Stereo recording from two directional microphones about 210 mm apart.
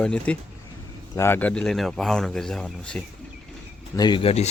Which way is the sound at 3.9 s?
20° left (ahead or behind).